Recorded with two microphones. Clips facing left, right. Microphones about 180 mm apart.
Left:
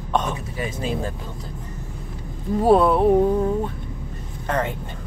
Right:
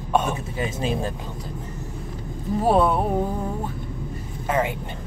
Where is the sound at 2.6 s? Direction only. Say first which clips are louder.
Left 3 dB; centre (ahead or behind).